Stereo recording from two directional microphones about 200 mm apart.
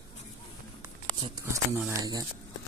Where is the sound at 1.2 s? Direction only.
15° right (ahead or behind).